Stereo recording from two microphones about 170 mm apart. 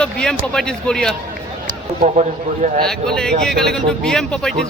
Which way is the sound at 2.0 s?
45° right (ahead or behind).